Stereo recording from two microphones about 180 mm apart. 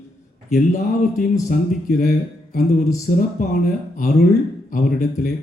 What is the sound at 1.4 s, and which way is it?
Speech, 45° left (ahead or behind).